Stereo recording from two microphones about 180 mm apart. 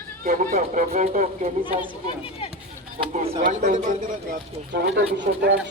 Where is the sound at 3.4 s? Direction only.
45° right (ahead or behind).